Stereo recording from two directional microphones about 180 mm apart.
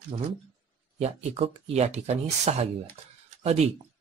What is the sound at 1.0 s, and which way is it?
Speech, 35° right (ahead or behind).